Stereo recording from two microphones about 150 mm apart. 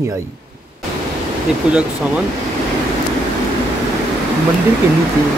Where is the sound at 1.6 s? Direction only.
5° right (ahead or behind).